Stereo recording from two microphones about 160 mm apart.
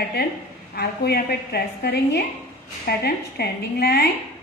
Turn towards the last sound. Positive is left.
turn(degrees=85)